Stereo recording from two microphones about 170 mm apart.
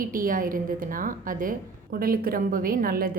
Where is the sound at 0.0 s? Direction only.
55° right (ahead or behind).